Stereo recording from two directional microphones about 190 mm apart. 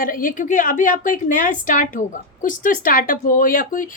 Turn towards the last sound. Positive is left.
turn(degrees=45)  # may be behind; listen again after turning